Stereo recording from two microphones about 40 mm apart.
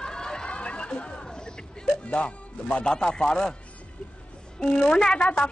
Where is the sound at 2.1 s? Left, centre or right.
Left.